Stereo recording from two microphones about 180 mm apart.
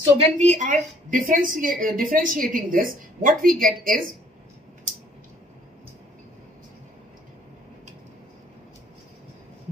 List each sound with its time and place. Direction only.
0.0 s a woman's voice: 35° right (ahead or behind)